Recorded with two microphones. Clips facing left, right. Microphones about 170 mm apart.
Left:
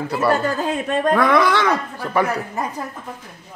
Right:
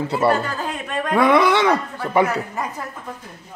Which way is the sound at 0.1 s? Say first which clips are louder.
Left 2 dB; 25° right (ahead or behind).